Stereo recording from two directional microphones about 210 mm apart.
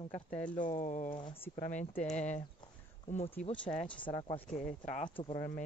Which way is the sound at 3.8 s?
25° left (ahead or behind).